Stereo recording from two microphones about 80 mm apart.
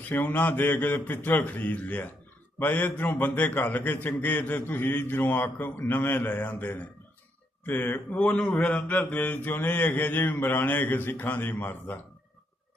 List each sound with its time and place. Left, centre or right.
0.1 s mantra: left